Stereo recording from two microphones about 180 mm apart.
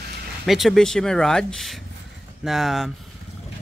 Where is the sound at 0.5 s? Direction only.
Centre (ahead or behind).